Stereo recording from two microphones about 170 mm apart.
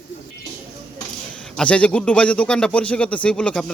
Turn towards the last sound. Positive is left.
turn(degrees=5)  # may be behind; listen again after turning